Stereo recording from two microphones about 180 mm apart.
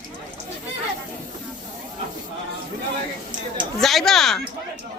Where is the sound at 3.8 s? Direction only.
Centre (ahead or behind).